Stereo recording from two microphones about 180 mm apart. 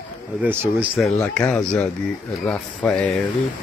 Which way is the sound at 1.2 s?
5° left (ahead or behind).